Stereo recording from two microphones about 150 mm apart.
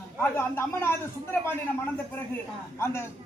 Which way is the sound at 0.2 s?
15° left (ahead or behind).